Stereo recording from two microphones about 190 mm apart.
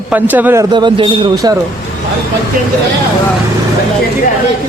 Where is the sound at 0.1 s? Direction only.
10° right (ahead or behind).